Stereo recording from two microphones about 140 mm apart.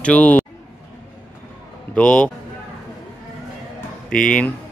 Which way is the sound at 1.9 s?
5° left (ahead or behind).